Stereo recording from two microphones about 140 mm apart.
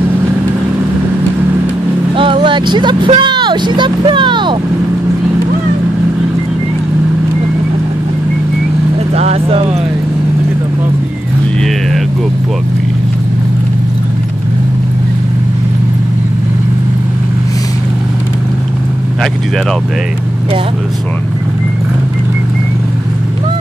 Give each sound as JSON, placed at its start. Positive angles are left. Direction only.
{"t": 2.1, "sound": "speech", "side_deg": -40}
{"t": 9.1, "sound": "speech", "side_deg": -50}